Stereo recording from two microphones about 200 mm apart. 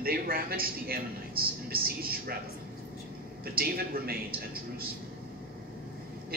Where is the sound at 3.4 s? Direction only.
50° right (ahead or behind).